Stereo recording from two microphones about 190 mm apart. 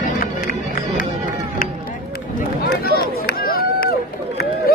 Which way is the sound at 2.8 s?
50° left (ahead or behind).